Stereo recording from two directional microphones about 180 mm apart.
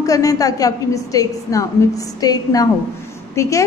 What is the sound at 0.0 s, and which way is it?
A woman's voice, 20° left (ahead or behind).